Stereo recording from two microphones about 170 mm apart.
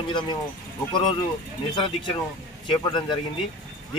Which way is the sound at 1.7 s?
25° left (ahead or behind).